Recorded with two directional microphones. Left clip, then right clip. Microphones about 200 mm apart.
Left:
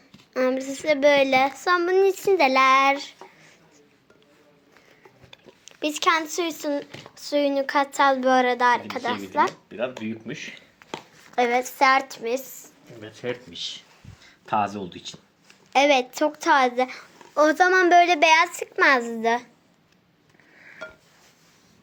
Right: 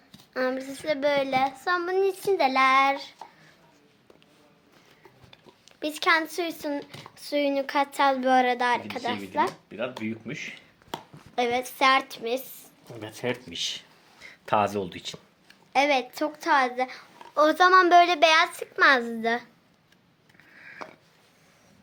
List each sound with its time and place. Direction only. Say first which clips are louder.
0.3 s a child's voice: left 5 dB; 5° left (ahead or behind)
5.3 s speech: left 5 dB; 10° left (ahead or behind)
10.0 s speech: left 1 dB; 20° right (ahead or behind)
11.3 s a child's voice: left 4 dB; 5° left (ahead or behind)
13.0 s speech: even; 50° right (ahead or behind)
15.7 s a child's voice: left 4 dB; 20° left (ahead or behind)